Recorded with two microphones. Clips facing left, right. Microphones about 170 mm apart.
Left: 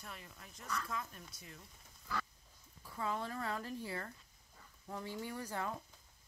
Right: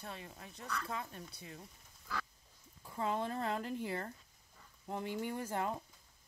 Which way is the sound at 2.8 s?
25° right (ahead or behind).